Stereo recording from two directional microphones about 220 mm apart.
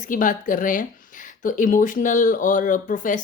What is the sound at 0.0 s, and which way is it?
Speech, 35° left (ahead or behind).